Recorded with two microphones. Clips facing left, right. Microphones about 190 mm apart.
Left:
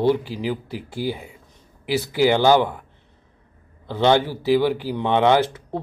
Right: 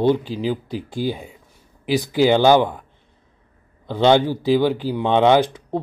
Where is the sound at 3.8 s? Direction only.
15° right (ahead or behind).